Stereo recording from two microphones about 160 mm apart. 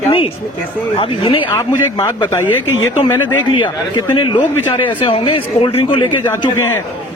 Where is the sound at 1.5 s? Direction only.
20° left (ahead or behind).